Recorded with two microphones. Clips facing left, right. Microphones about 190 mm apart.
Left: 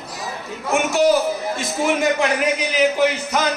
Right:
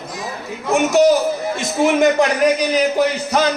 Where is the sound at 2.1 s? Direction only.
40° right (ahead or behind).